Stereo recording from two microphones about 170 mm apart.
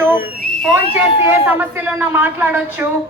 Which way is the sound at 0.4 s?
5° left (ahead or behind).